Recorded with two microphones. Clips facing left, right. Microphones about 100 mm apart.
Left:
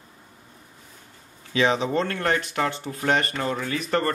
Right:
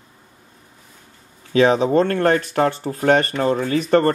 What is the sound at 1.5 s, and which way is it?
Speech, 45° right (ahead or behind).